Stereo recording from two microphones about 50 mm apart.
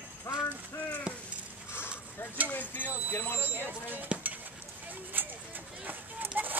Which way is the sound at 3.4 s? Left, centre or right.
Right.